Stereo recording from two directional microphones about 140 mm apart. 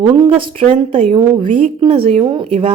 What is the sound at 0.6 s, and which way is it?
A woman's voice, 45° right (ahead or behind).